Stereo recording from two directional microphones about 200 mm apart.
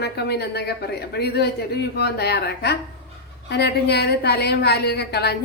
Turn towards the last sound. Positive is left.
turn(degrees=55)  # may be behind; listen again after turning